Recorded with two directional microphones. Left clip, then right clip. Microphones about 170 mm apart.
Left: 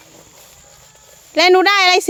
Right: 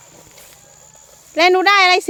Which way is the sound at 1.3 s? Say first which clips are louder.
Left 1 dB; 20° left (ahead or behind).